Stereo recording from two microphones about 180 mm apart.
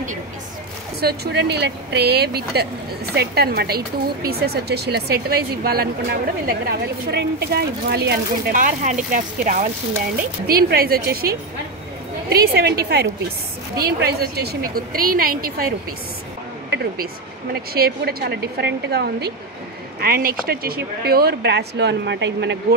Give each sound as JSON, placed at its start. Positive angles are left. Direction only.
{"t": 1.0, "sound": "speech", "side_deg": -65}
{"t": 16.7, "sound": "speech", "side_deg": -60}